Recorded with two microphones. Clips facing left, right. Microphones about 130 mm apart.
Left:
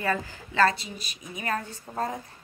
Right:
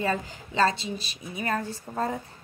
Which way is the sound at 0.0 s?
20° right (ahead or behind).